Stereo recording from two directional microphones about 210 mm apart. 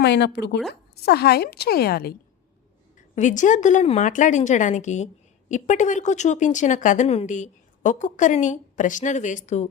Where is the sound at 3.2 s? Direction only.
35° left (ahead or behind).